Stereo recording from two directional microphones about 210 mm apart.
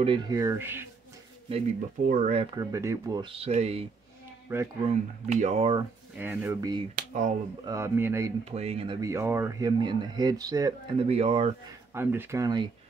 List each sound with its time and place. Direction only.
0.0 s speech: 20° right (ahead or behind)
2.0 s speech: 35° right (ahead or behind)
2.5 s speech: 15° right (ahead or behind)
4.5 s speech: 10° right (ahead or behind)
4.8 s speech: 35° right (ahead or behind)
6.1 s speech: 10° right (ahead or behind)
7.0 s speech: 35° right (ahead or behind)
7.6 s speech: 15° right (ahead or behind)
8.5 s speech: 30° right (ahead or behind)
9.0 s speech: 10° right (ahead or behind)
11.1 s speech: 30° right (ahead or behind)
11.9 s speech: 10° right (ahead or behind)